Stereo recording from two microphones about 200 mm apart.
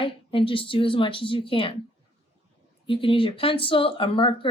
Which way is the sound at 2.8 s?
25° left (ahead or behind).